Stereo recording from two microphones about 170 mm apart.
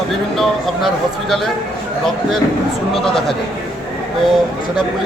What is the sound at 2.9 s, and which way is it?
Speech, centre (ahead or behind).